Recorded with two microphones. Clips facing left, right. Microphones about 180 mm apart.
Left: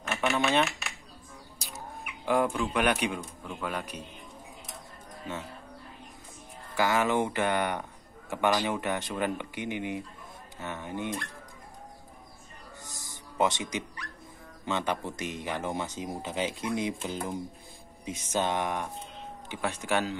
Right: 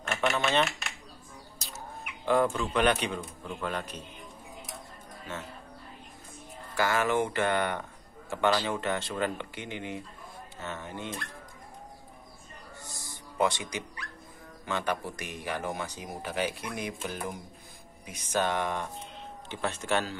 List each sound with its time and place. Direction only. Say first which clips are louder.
0.1 s speech: left 1 dB; 5° left (ahead or behind)
2.2 s speech: right 1 dB; 10° left (ahead or behind)
6.8 s speech: left 1 dB; 15° left (ahead or behind)
12.8 s music: right 1 dB; 15° left (ahead or behind)
14.6 s speech: left 1 dB; 20° left (ahead or behind)